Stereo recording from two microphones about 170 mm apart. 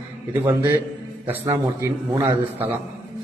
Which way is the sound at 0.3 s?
10° right (ahead or behind).